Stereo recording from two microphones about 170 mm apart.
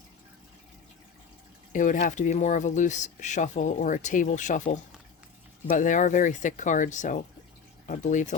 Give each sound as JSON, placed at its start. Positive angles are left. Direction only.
{"t": 1.7, "sound": "speech", "side_deg": 50}